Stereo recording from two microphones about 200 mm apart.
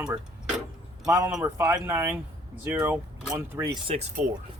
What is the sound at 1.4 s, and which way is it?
Speech, 15° right (ahead or behind).